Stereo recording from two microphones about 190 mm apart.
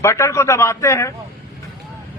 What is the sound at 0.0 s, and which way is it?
A man's voice, 15° left (ahead or behind).